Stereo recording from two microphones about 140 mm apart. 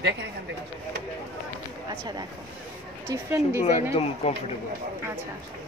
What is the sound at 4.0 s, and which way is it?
Speech, 45° left (ahead or behind).